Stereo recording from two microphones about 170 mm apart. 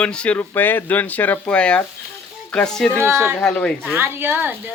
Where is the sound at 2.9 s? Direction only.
15° right (ahead or behind).